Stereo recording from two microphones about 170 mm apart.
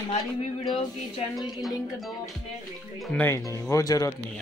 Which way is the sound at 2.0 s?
Centre (ahead or behind).